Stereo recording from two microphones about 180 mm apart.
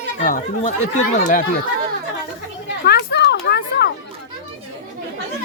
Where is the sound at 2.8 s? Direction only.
65° left (ahead or behind).